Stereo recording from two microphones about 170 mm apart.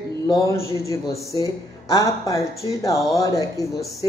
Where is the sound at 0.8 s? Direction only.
15° left (ahead or behind).